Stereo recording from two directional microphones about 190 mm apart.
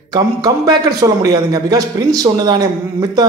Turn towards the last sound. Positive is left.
turn(degrees=-20)  # may be behind; listen again after turning